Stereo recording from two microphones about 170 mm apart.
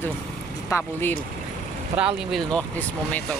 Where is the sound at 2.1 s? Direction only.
Centre (ahead or behind).